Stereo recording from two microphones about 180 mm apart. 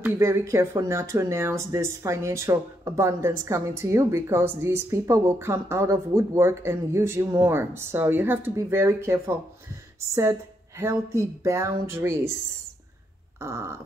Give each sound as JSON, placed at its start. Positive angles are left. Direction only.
{"t": 0.0, "sound": "speech", "side_deg": -15}
{"t": 10.8, "sound": "speech", "side_deg": -15}
{"t": 13.4, "sound": "speech", "side_deg": -15}